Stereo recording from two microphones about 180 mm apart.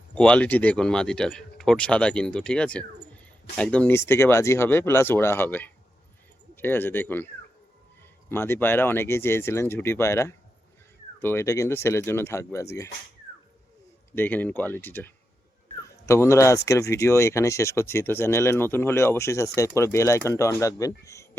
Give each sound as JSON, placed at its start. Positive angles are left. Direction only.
{"t": 0.2, "sound": "speech", "side_deg": 5}
{"t": 8.3, "sound": "speech", "side_deg": 10}
{"t": 14.2, "sound": "speech", "side_deg": 10}
{"t": 15.8, "sound": "a sound", "side_deg": 15}
{"t": 16.6, "sound": "speech", "side_deg": 15}